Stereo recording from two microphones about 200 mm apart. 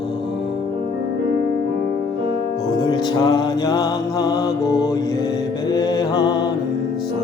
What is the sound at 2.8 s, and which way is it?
Music, 20° left (ahead or behind).